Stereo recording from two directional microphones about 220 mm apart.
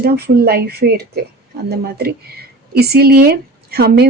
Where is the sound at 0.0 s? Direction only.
45° right (ahead or behind).